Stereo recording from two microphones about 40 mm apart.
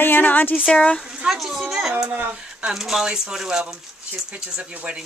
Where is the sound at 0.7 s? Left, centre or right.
Left.